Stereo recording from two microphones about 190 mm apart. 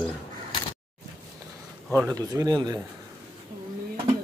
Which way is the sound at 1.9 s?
15° right (ahead or behind).